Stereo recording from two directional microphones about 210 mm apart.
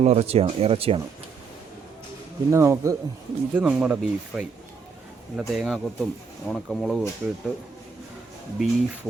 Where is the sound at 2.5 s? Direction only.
15° right (ahead or behind).